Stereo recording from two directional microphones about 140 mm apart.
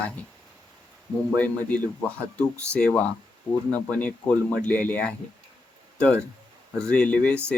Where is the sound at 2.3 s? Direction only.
10° left (ahead or behind).